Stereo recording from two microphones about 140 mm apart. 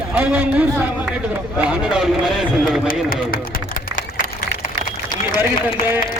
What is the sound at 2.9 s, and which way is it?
Speech, 90° left.